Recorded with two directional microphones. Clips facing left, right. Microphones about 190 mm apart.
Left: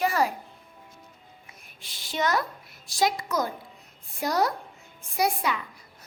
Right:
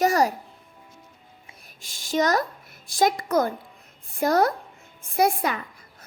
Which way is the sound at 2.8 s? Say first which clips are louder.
Right 4 dB; 55° right (ahead or behind).